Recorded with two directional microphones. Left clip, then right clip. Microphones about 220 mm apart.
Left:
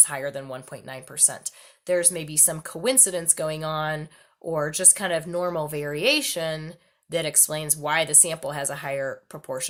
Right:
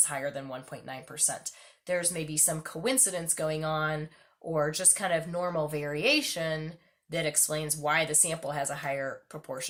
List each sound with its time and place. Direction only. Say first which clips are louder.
0.0 s speech: left 5 dB; 50° left (ahead or behind)